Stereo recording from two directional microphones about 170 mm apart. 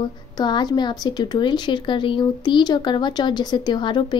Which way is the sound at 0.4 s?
25° left (ahead or behind).